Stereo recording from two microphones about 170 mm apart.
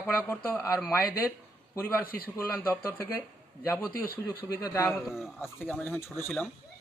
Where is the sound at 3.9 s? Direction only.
60° left (ahead or behind).